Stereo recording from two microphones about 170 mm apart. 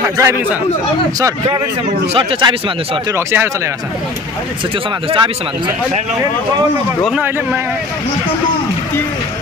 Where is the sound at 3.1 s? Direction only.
15° right (ahead or behind).